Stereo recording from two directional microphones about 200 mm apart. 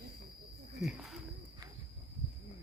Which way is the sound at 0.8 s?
Centre (ahead or behind).